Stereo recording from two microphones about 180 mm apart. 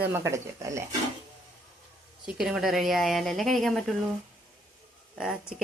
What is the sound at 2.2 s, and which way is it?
A woman's voice, centre (ahead or behind).